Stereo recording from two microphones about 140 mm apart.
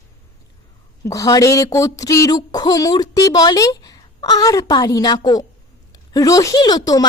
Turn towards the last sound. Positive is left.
turn(degrees=25)  # may be behind; listen again after turning